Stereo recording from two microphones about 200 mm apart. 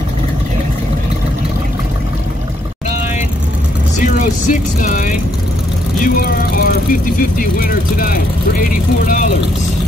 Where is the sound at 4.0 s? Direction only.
40° left (ahead or behind).